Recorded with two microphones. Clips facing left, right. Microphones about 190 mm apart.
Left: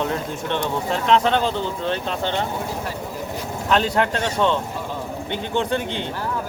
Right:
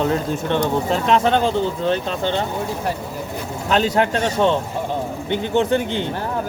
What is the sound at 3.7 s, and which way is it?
Speech, 35° right (ahead or behind).